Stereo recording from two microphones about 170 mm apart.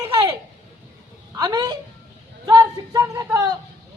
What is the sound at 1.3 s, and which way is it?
Speech, 25° right (ahead or behind).